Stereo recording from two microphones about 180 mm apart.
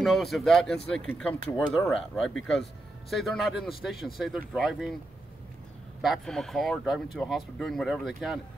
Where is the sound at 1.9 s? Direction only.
Centre (ahead or behind).